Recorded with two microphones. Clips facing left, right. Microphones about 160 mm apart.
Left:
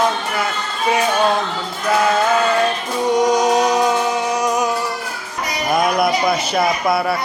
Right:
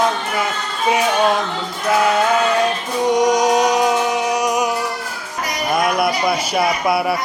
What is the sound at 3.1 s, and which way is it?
Music, 15° right (ahead or behind).